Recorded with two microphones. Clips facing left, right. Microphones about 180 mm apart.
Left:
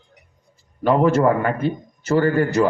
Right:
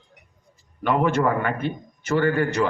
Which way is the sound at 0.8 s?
35° left (ahead or behind).